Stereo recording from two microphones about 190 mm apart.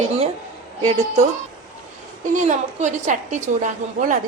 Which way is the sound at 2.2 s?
40° right (ahead or behind).